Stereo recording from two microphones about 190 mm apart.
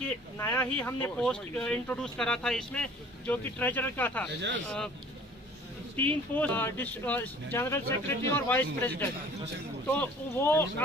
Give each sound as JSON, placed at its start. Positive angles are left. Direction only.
{"t": 0.4, "sound": "speech", "side_deg": 10}
{"t": 4.3, "sound": "speech", "side_deg": -70}
{"t": 4.6, "sound": "speech", "side_deg": 5}
{"t": 5.9, "sound": "speech", "side_deg": 10}